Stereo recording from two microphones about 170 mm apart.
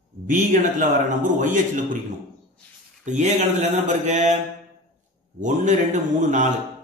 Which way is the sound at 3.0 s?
45° right (ahead or behind).